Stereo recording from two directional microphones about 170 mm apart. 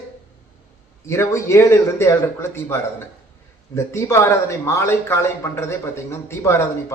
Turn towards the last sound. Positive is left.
turn(degrees=15)  # may be behind; listen again after turning